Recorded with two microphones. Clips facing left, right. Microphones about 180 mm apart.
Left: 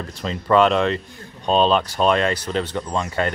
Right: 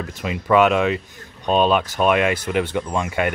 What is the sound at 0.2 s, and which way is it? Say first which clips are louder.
Speech: even; 10° right (ahead or behind).